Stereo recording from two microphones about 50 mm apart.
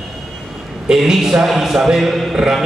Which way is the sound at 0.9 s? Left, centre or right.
Centre.